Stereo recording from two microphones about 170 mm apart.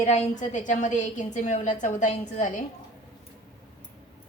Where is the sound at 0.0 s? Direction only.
40° left (ahead or behind).